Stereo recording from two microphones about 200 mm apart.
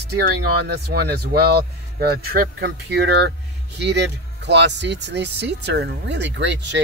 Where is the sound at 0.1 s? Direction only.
50° right (ahead or behind).